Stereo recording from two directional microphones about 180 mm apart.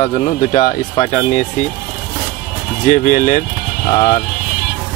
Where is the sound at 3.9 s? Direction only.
35° left (ahead or behind).